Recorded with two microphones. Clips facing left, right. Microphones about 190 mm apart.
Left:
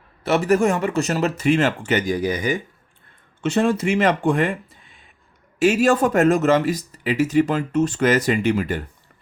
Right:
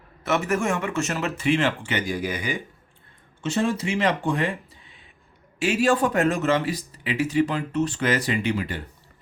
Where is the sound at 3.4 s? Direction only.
60° left (ahead or behind).